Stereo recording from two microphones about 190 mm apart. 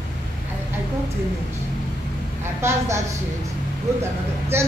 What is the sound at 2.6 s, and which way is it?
Speech, 15° right (ahead or behind).